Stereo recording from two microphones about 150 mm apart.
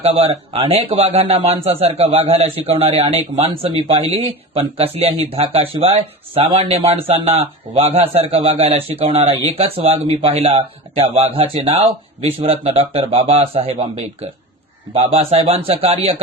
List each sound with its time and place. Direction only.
0.0 s speech: 40° right (ahead or behind)